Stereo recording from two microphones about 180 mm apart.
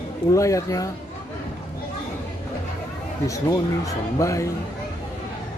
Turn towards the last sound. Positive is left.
turn(degrees=15)  # may be behind; listen again after turning